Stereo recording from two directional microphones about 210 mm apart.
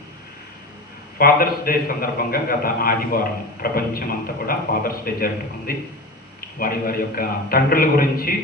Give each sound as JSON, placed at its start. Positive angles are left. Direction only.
{"t": 1.2, "sound": "a man's voice", "side_deg": 45}